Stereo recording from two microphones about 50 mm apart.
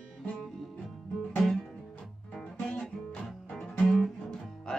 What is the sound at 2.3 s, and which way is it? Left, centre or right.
Music, centre.